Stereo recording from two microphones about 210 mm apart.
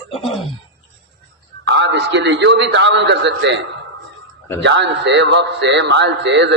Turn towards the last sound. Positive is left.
turn(degrees=-55)  # may be behind; listen again after turning